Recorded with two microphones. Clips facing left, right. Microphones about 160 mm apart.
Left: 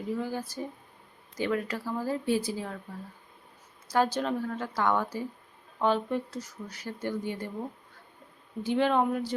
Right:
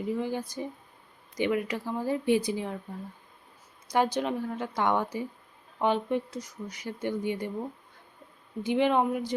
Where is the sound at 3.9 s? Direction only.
15° right (ahead or behind).